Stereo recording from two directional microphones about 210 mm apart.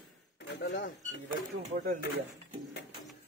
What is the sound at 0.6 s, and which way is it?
Speech, 55° left (ahead or behind).